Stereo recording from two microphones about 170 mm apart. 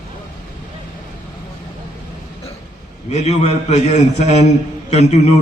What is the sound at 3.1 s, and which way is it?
A man's voice, 40° left (ahead or behind).